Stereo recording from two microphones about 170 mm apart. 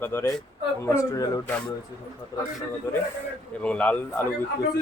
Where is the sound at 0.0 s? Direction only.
15° left (ahead or behind).